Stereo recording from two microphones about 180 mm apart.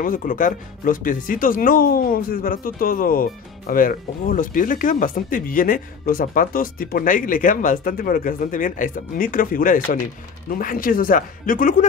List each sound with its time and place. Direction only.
0.0 s speech: 50° left (ahead or behind)